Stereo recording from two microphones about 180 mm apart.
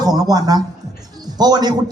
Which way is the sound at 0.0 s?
20° right (ahead or behind).